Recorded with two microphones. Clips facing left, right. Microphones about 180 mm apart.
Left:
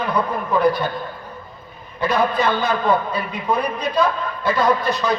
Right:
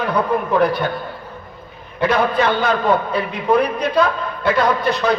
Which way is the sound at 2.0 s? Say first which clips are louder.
Right 2 dB; 65° right (ahead or behind).